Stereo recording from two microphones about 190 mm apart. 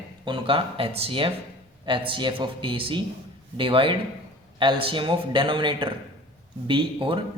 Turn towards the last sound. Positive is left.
turn(degrees=-25)  # may be behind; listen again after turning